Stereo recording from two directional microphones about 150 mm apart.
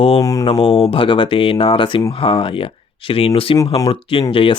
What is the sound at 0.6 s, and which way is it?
Speech, 40° left (ahead or behind).